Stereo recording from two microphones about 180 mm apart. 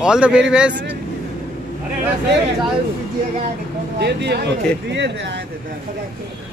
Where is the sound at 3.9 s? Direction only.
65° right (ahead or behind).